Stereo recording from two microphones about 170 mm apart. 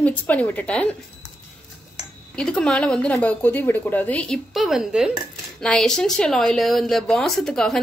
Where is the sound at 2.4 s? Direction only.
5° left (ahead or behind).